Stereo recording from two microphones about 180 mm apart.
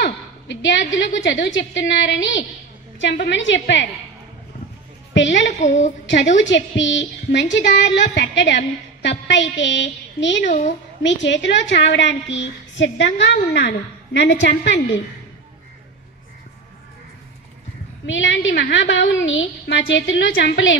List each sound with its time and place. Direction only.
0.0 s a sound: 85° left
1.2 s a woman's voice: 90° left
5.1 s a woman's voice: 90° left
5.6 s a woman's voice: 40° left (ahead or behind)
6.0 s a woman's voice: 90° left
10.4 s a woman's voice: 45° left (ahead or behind)
11.0 s a woman's voice: 90° left
18.0 s a woman's voice: 90° left